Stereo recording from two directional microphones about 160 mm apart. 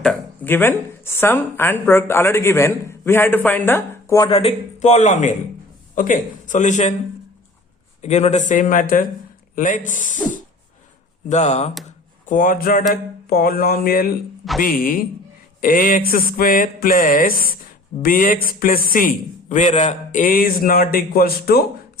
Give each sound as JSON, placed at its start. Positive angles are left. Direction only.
{"t": 0.4, "sound": "speech", "side_deg": 15}
{"t": 4.3, "sound": "speech", "side_deg": 40}
{"t": 8.0, "sound": "speech", "side_deg": 45}
{"t": 11.3, "sound": "speech", "side_deg": 45}
{"t": 11.9, "sound": "a sound", "side_deg": 55}
{"t": 12.9, "sound": "a man's voice", "side_deg": 65}